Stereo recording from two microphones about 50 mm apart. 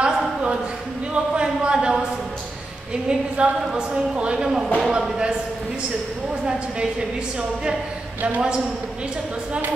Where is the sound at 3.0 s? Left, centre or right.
Right.